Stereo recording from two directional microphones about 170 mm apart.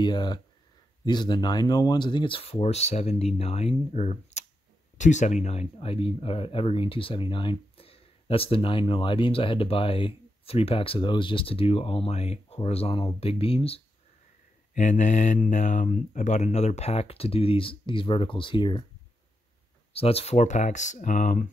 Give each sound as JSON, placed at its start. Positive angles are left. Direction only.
{"t": 0.0, "sound": "speech", "side_deg": 25}
{"t": 14.7, "sound": "speech", "side_deg": 45}
{"t": 19.9, "sound": "speech", "side_deg": 35}